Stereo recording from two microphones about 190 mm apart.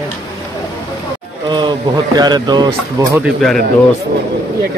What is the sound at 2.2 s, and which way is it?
Speech, 20° right (ahead or behind).